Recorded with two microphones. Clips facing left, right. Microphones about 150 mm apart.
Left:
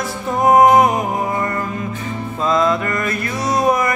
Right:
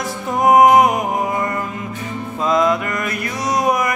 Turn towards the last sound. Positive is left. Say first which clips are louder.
# left 1 dB
turn(degrees=-15)  # may be behind; listen again after turning